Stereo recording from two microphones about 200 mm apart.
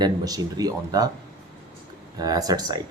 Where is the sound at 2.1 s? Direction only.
20° right (ahead or behind).